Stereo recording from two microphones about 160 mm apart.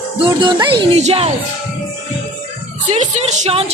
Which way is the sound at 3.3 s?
40° right (ahead or behind).